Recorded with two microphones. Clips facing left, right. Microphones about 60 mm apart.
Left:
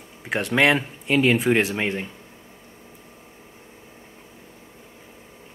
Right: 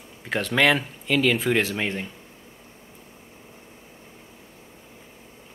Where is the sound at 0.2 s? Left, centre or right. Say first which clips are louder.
Left 1 dB; centre.